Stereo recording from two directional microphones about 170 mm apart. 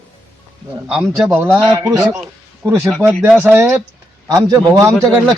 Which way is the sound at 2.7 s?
15° right (ahead or behind).